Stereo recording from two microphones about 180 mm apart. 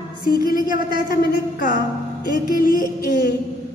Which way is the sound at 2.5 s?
50° left (ahead or behind).